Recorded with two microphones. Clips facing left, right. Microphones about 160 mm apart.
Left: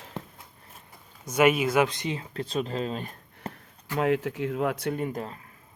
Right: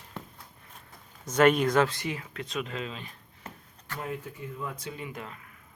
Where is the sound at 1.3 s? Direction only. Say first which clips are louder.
Even; 10° left (ahead or behind); by 3.5 s 45° left (ahead or behind).